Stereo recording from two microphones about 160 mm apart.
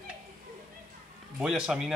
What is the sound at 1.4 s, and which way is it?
Speech, 5° right (ahead or behind).